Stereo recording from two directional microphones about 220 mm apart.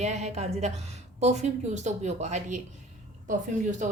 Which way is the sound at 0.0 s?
30° right (ahead or behind).